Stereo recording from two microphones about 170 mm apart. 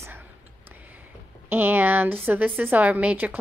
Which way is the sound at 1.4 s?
10° right (ahead or behind).